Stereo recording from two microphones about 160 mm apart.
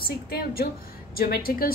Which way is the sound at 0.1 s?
70° left (ahead or behind).